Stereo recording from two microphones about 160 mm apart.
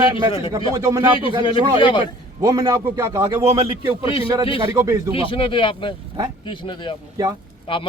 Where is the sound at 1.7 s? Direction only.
30° left (ahead or behind).